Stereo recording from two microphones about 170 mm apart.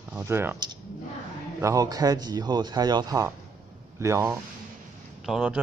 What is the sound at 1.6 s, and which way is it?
Speech, 20° right (ahead or behind).